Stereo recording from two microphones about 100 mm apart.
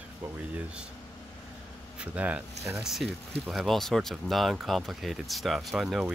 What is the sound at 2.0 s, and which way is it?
Speech, 15° right (ahead or behind).